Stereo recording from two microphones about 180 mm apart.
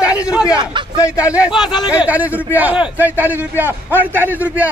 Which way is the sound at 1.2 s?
5° right (ahead or behind).